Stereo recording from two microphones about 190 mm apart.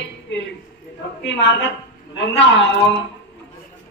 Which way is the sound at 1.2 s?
70° left (ahead or behind).